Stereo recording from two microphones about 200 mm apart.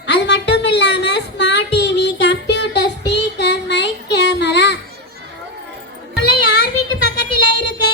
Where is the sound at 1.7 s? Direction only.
60° left (ahead or behind).